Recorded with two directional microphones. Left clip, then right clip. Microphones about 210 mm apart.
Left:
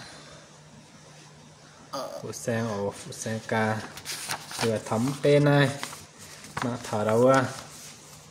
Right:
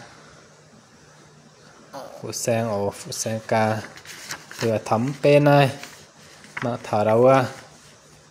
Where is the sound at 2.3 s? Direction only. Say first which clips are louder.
Right 8 dB; 30° right (ahead or behind).